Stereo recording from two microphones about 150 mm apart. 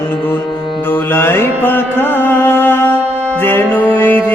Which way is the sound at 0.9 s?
15° left (ahead or behind).